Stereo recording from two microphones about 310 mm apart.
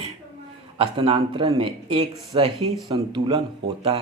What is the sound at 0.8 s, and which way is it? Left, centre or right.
A man's voice, centre.